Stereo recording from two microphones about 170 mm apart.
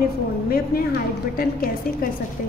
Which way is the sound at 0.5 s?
60° left (ahead or behind).